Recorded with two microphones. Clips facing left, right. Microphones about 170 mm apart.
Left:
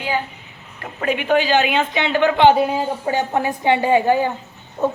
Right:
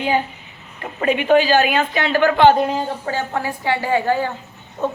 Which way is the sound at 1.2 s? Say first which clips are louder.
Right 2 dB; 15° left (ahead or behind).